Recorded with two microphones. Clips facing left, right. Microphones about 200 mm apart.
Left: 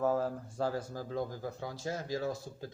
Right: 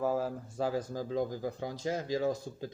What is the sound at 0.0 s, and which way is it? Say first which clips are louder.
Speech: even; 10° right (ahead or behind).